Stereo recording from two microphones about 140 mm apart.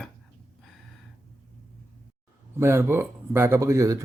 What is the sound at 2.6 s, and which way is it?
Speech, 20° right (ahead or behind).